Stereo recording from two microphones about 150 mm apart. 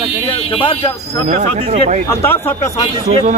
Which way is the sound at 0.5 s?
35° left (ahead or behind).